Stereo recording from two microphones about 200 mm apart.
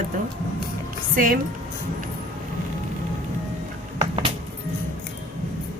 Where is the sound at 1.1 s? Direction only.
45° right (ahead or behind).